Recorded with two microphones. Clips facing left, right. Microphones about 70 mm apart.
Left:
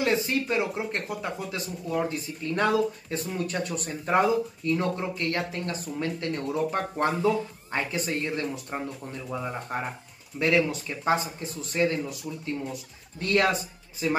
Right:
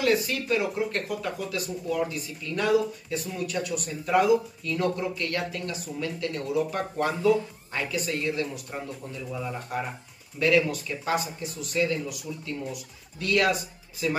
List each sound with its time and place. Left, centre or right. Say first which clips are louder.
0.0 s speech: even; left